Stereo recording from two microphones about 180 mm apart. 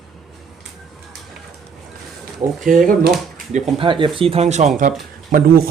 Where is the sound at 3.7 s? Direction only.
30° right (ahead or behind).